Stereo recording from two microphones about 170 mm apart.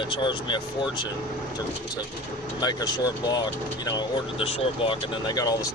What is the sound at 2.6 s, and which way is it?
Speech, 25° left (ahead or behind).